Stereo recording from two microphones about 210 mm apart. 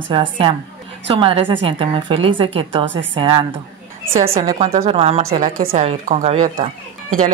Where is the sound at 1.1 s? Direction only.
25° right (ahead or behind).